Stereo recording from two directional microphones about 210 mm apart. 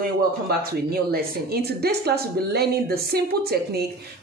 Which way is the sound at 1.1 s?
50° right (ahead or behind).